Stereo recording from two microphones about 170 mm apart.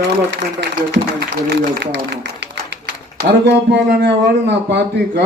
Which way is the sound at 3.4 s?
85° right.